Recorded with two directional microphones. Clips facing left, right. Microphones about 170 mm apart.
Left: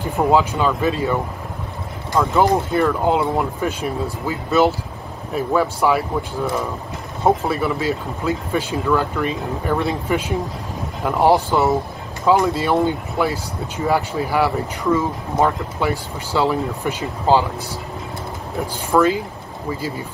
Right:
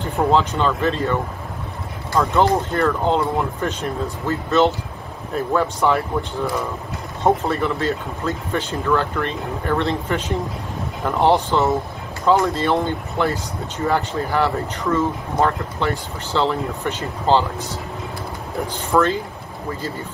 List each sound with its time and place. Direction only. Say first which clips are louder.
0.2 s speech: left 1 dB; 10° left (ahead or behind)
2.4 s speech: left 1 dB; 10° left (ahead or behind)
18.7 s speech: left 2 dB; 10° left (ahead or behind)